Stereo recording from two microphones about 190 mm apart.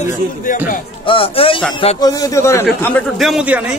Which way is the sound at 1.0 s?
30° left (ahead or behind).